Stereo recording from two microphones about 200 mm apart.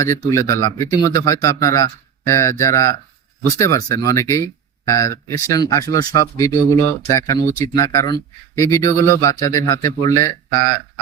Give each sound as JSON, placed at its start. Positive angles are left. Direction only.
{"t": 0.0, "sound": "speech", "side_deg": 15}